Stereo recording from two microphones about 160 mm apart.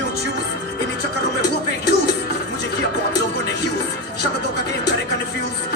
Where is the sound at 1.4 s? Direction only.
90° left.